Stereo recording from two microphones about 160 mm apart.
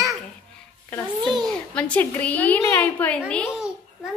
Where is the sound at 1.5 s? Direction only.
10° left (ahead or behind).